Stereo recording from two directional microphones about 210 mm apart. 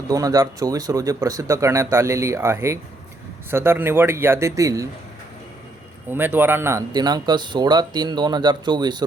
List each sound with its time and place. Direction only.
0.1 s speech: 15° right (ahead or behind)
6.1 s speech: 10° right (ahead or behind)